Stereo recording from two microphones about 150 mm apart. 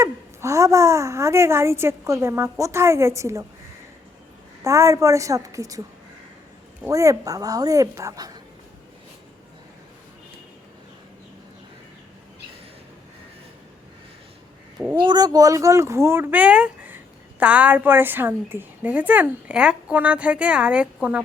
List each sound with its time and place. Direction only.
0.0 s a woman's voice: 20° right (ahead or behind)
4.6 s a woman's voice: 20° right (ahead or behind)
6.8 s a woman's voice: 20° right (ahead or behind)
14.9 s a woman's voice: 30° right (ahead or behind); by 21.2 s 10° right (ahead or behind)